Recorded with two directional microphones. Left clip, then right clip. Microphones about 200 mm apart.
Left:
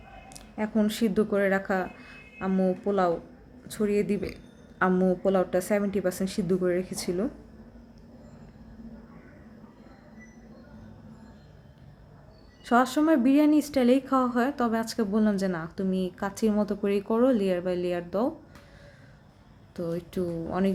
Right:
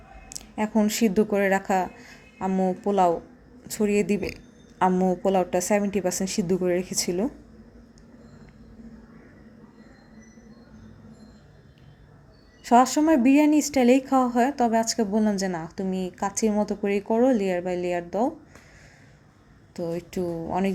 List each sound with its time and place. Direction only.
0.3 s speech: 20° right (ahead or behind)
12.6 s speech: 15° right (ahead or behind)
15.9 s a woman's voice: 35° right (ahead or behind)
16.1 s speech: 10° right (ahead or behind)
19.7 s speech: 10° right (ahead or behind)